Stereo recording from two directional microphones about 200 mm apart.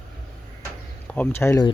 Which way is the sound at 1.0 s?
5° left (ahead or behind).